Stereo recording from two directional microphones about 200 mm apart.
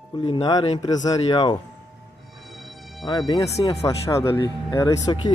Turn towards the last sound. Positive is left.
turn(degrees=20)  # may be behind; listen again after turning